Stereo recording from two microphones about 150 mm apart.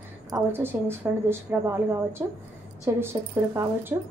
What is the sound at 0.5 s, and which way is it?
A woman's voice, 15° right (ahead or behind).